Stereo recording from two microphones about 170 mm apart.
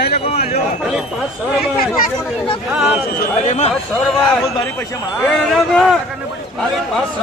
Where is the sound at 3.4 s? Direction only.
40° left (ahead or behind).